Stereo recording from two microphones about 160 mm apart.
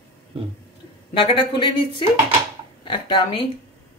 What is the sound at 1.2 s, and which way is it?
Speech, 30° left (ahead or behind).